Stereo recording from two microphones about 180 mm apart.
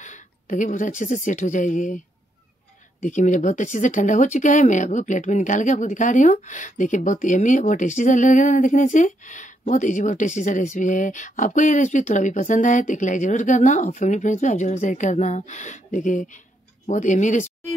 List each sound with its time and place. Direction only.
0.0 s speech: 45° left (ahead or behind)
3.0 s speech: 45° left (ahead or behind)